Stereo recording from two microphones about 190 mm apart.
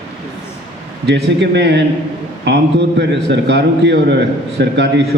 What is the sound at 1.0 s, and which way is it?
A man's voice, 65° right (ahead or behind).